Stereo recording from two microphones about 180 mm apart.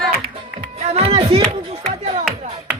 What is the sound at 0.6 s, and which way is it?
Music, 35° right (ahead or behind).